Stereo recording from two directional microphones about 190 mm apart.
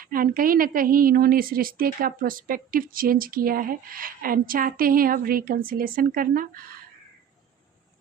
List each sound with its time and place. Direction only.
0.0 s a woman's voice: 50° right (ahead or behind)